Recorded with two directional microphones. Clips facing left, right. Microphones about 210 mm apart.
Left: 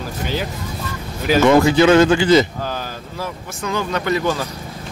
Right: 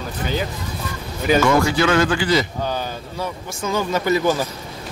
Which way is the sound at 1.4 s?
20° left (ahead or behind).